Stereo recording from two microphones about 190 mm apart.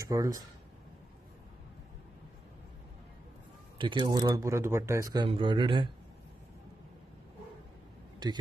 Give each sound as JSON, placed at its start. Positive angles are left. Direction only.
{"t": 0.0, "sound": "speech", "side_deg": -15}
{"t": 3.7, "sound": "speech", "side_deg": -25}